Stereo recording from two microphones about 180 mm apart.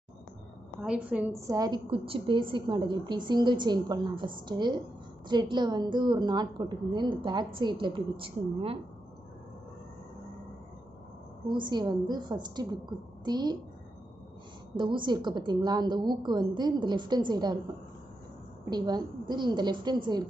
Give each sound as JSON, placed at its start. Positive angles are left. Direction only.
{"t": 0.7, "sound": "a woman's voice", "side_deg": -5}
{"t": 11.4, "sound": "a woman's voice", "side_deg": -25}
{"t": 14.8, "sound": "a woman's voice", "side_deg": -25}
{"t": 18.7, "sound": "a woman's voice", "side_deg": -25}